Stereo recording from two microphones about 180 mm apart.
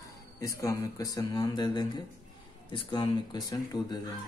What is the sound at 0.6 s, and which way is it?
A man's voice, 20° left (ahead or behind).